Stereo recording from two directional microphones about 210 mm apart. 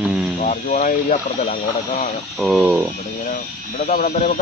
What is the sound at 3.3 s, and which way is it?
Speech, 40° left (ahead or behind).